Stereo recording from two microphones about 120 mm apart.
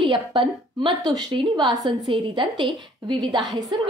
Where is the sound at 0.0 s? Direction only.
45° right (ahead or behind).